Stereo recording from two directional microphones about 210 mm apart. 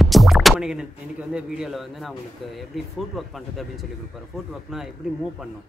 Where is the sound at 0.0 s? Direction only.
Centre (ahead or behind).